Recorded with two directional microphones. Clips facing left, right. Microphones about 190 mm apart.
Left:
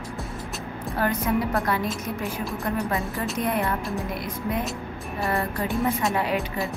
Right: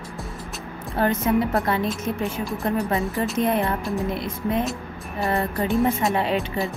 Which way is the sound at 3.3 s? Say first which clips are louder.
Right 3 dB; 25° right (ahead or behind).